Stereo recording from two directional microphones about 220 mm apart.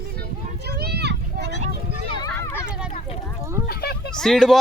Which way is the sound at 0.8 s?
50° right (ahead or behind).